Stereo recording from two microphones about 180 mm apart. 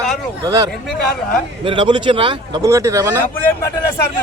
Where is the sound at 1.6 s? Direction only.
25° right (ahead or behind).